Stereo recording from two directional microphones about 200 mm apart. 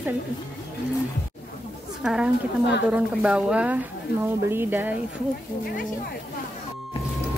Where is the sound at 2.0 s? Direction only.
5° right (ahead or behind).